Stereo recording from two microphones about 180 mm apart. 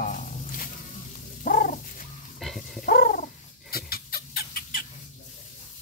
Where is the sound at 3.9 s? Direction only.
55° left (ahead or behind).